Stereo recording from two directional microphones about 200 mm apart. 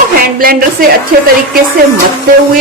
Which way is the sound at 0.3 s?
45° right (ahead or behind).